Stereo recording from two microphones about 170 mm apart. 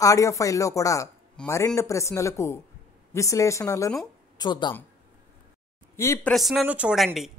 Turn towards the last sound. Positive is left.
turn(degrees=0)  # may be behind; listen again after turning